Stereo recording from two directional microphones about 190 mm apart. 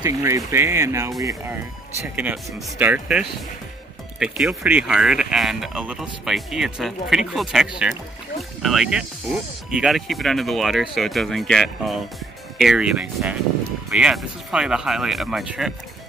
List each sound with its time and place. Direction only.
0.0 s speech: 15° right (ahead or behind)
2.1 s speech: 10° right (ahead or behind)